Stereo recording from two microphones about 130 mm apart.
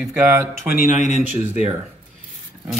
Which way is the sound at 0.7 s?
80° left.